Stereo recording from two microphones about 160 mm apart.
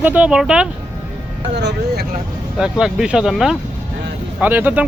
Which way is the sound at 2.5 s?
5° right (ahead or behind).